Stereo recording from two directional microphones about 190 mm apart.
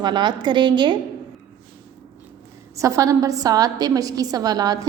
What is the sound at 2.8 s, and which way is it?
A woman's voice, 15° right (ahead or behind).